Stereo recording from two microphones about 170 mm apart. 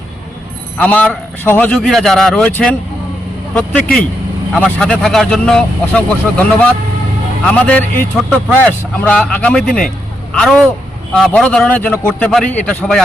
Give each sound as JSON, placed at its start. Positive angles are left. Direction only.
{"t": 0.8, "sound": "a man's voice", "side_deg": 10}